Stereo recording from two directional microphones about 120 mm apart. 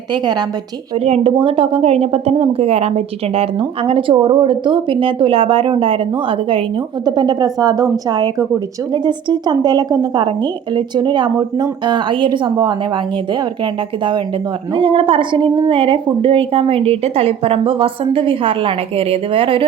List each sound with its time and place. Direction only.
0.1 s a woman's voice: 35° right (ahead or behind)
0.9 s a woman's voice: 55° right (ahead or behind)
7.0 s a woman's voice: 35° right (ahead or behind)
14.7 s a woman's voice: 45° right (ahead or behind)